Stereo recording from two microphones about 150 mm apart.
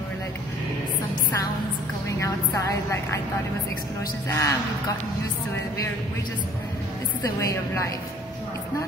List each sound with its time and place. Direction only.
2.0 s a woman's voice: 20° left (ahead or behind)
4.3 s a woman's voice: 20° left (ahead or behind)
7.3 s a woman's voice: 20° left (ahead or behind)